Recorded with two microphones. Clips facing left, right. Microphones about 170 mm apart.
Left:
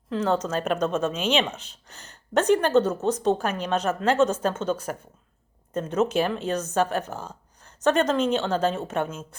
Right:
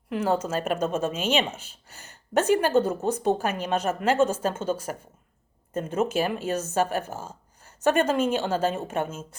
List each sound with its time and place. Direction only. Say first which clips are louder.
0.1 s speech: left 1 dB; 15° right (ahead or behind)